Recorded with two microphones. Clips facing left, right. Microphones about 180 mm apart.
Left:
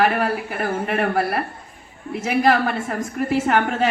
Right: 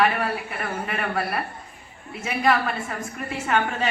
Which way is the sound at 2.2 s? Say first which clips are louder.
Left 4 dB; 80° left.